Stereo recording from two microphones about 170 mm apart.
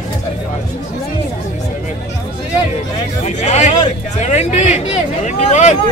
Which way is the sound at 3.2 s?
45° left (ahead or behind).